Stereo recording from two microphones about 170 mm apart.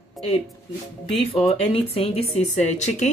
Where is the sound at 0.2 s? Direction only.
Centre (ahead or behind).